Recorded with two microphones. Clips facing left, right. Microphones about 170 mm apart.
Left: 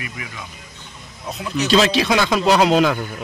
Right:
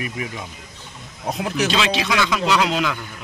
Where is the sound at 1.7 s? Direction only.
40° left (ahead or behind).